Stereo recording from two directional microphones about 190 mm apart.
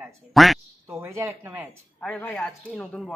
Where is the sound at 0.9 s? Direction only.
15° right (ahead or behind).